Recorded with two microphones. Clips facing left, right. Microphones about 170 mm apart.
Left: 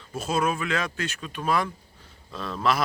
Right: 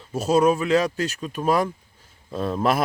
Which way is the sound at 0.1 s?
40° right (ahead or behind).